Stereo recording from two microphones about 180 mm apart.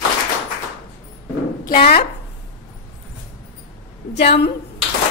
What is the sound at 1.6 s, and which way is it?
Speech, 55° left (ahead or behind).